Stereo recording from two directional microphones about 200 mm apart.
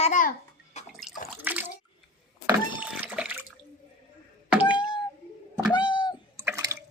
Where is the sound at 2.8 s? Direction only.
5° right (ahead or behind).